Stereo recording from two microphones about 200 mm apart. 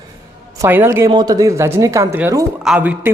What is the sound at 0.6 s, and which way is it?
Speech, 15° right (ahead or behind).